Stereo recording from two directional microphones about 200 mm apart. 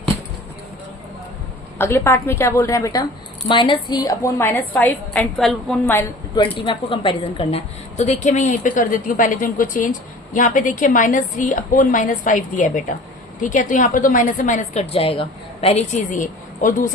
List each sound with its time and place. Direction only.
1.8 s a woman's voice: 10° left (ahead or behind)
6.3 s a woman's voice: 25° left (ahead or behind)